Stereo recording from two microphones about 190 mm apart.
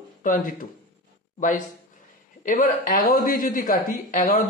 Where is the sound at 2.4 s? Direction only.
45° left (ahead or behind).